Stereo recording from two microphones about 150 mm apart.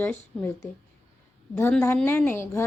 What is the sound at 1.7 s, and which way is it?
Speech, 15° left (ahead or behind).